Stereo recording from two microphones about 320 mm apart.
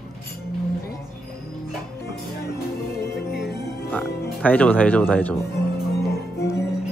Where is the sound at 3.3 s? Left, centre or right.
Left.